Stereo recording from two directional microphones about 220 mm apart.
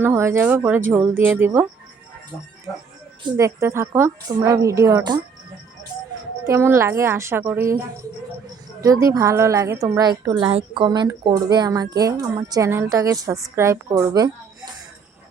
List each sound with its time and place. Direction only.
0.0 s a woman's voice: 10° right (ahead or behind)
3.3 s a woman's voice: 15° right (ahead or behind)
6.4 s a woman's voice: 10° right (ahead or behind)
8.8 s a woman's voice: 15° right (ahead or behind)